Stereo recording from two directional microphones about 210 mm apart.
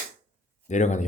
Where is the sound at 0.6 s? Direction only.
35° left (ahead or behind).